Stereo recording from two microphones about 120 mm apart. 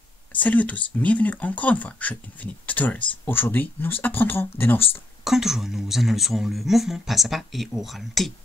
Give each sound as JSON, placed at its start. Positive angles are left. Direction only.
{"t": 0.3, "sound": "speech", "side_deg": 15}
{"t": 5.2, "sound": "speech", "side_deg": -5}